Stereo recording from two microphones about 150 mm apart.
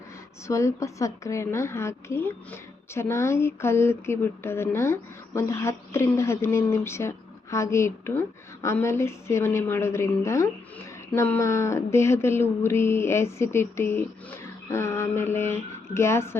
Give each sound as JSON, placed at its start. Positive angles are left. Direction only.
{"t": 0.4, "sound": "a woman's voice", "side_deg": 20}